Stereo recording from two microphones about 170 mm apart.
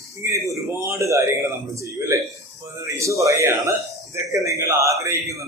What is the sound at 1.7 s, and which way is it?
A man's voice, 20° right (ahead or behind).